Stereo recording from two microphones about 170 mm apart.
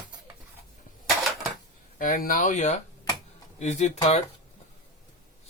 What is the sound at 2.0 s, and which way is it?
Speech, 55° left (ahead or behind).